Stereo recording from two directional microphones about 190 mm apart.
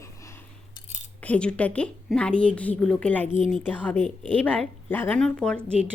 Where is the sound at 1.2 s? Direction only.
5° left (ahead or behind).